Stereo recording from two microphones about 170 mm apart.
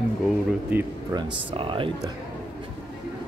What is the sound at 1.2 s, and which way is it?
Speech, 30° right (ahead or behind).